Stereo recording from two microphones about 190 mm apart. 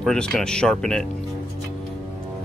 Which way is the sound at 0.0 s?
5° left (ahead or behind).